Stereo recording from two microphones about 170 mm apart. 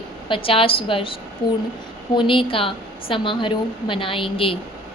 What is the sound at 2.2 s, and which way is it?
A woman's voice, 30° left (ahead or behind).